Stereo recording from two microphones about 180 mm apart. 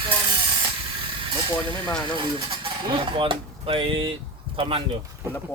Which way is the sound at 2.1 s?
30° right (ahead or behind).